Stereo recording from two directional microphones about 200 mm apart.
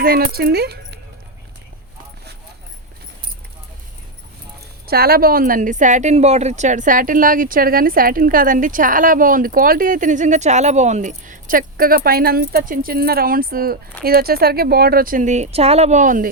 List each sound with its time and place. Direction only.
0.0 s speech: 50° right (ahead or behind)
4.9 s a woman's voice: 50° right (ahead or behind)